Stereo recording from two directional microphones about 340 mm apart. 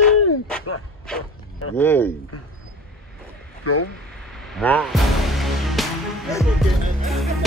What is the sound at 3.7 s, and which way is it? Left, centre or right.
Speech, left.